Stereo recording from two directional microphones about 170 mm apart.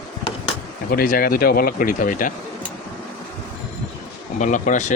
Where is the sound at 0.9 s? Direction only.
60° left (ahead or behind).